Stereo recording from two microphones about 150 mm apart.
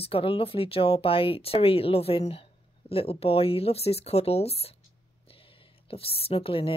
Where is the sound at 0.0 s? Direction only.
40° left (ahead or behind).